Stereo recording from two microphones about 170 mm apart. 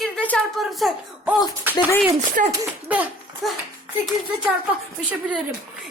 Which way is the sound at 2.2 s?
45° right (ahead or behind).